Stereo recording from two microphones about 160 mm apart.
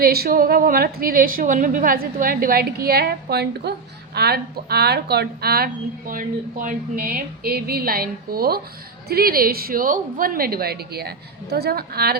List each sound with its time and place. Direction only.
0.0 s a woman's voice: 70° right (ahead or behind)